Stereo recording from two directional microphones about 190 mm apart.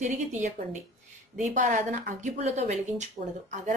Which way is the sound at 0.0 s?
40° right (ahead or behind).